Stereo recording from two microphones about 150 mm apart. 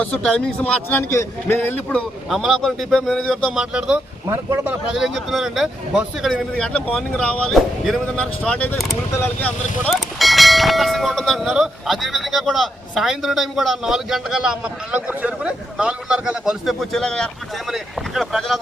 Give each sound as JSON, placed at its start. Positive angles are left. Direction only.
{"t": 0.0, "sound": "speech", "side_deg": 5}
{"t": 2.3, "sound": "speech", "side_deg": 0}
{"t": 3.6, "sound": "speech", "side_deg": -5}
{"t": 4.3, "sound": "speech", "side_deg": -25}
{"t": 4.6, "sound": "speech", "side_deg": -5}
{"t": 9.8, "sound": "speech", "side_deg": 0}